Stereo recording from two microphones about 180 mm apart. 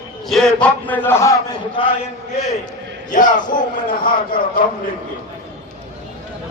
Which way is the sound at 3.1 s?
45° left (ahead or behind).